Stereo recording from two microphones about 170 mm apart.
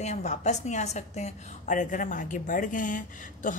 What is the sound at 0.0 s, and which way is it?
A woman's voice, 45° left (ahead or behind).